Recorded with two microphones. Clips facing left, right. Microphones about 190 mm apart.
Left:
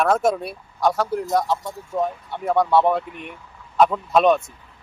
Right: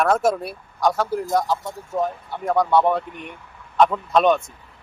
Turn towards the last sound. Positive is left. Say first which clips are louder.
# left 1 dB
turn(degrees=0)  # may be behind; listen again after turning